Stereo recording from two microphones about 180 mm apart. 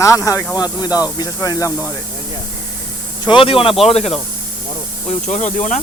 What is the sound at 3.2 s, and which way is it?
Speech, 30° left (ahead or behind).